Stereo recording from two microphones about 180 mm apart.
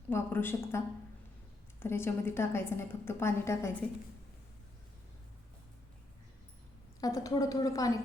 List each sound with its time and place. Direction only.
0.1 s a woman's voice: 10° left (ahead or behind)
1.8 s a woman's voice: 15° left (ahead or behind)
7.0 s a woman's voice: 20° left (ahead or behind)